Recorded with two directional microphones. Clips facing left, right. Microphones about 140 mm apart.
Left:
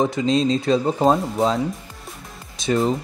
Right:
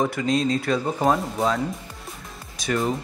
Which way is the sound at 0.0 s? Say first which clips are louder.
Left 3 dB; 25° left (ahead or behind).